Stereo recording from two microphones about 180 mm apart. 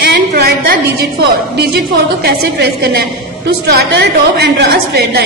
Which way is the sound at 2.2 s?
60° right (ahead or behind).